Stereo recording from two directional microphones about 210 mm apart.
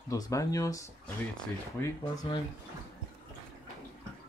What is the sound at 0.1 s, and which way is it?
Speech, 15° left (ahead or behind).